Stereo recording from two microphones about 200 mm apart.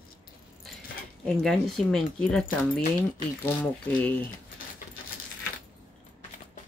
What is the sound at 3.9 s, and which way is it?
Speech, 5° left (ahead or behind).